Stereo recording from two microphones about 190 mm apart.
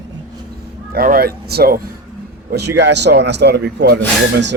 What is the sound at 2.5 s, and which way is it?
Speech, 65° right (ahead or behind).